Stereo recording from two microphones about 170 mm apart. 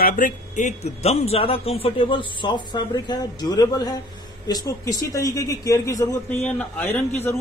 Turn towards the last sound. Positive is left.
turn(degrees=10)  # may be behind; listen again after turning